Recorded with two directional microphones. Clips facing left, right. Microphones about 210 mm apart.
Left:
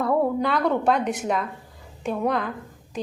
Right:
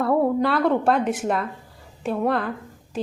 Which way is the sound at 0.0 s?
5° right (ahead or behind).